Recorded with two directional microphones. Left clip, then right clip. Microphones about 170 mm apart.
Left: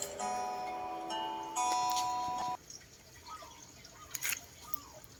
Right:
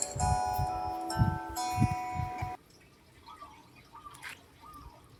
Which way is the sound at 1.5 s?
10° left (ahead or behind).